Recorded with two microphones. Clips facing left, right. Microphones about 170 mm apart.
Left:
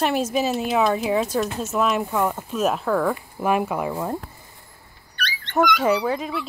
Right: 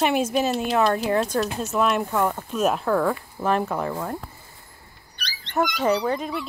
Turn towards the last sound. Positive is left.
turn(degrees=5)  # may be behind; listen again after turning